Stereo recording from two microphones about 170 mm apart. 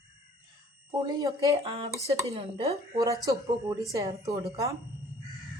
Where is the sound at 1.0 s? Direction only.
20° right (ahead or behind).